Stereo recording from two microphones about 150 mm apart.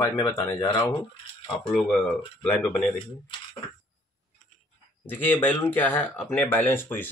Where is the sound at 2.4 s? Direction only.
5° left (ahead or behind).